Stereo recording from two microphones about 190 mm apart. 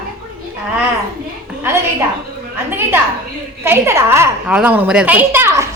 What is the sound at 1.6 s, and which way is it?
Speech, 15° right (ahead or behind).